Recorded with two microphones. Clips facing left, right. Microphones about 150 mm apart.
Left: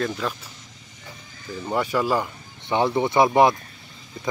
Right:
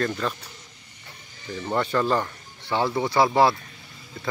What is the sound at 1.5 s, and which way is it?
Speech, 10° left (ahead or behind).